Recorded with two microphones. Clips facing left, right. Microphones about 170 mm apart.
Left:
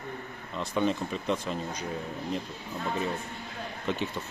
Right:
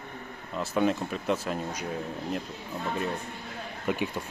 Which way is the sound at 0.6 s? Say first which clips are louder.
Right 2 dB; 5° right (ahead or behind).